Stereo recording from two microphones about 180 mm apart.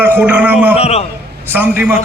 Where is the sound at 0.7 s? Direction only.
35° left (ahead or behind).